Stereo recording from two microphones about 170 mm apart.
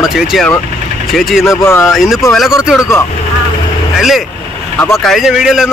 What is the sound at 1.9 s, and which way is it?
Speech, centre (ahead or behind).